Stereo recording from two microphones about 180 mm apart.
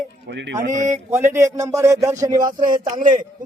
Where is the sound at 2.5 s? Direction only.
50° right (ahead or behind).